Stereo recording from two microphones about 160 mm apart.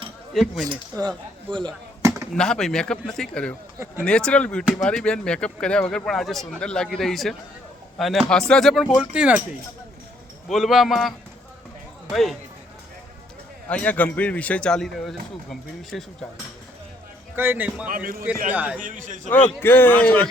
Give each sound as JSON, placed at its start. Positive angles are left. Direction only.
{"t": 0.4, "sound": "speech", "side_deg": 0}
{"t": 0.9, "sound": "speech", "side_deg": -30}
{"t": 2.3, "sound": "a man's voice", "side_deg": 5}
{"t": 10.5, "sound": "speech", "side_deg": 0}
{"t": 12.1, "sound": "speech", "side_deg": 0}
{"t": 13.7, "sound": "speech", "side_deg": 10}
{"t": 17.3, "sound": "a man's voice", "side_deg": -15}
{"t": 17.8, "sound": "a man's voice", "side_deg": -65}
{"t": 18.5, "sound": "a man's voice", "side_deg": -10}
{"t": 18.8, "sound": "a man's voice", "side_deg": -55}
{"t": 19.3, "sound": "speech", "side_deg": 10}